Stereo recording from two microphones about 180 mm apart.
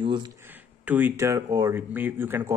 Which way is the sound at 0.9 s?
10° right (ahead or behind).